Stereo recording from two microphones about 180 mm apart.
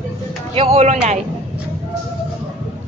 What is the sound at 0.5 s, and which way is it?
Speech, 35° right (ahead or behind).